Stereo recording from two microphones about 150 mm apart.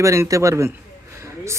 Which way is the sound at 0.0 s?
20° right (ahead or behind).